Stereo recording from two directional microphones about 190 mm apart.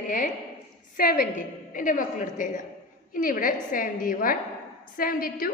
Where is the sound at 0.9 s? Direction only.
55° left (ahead or behind).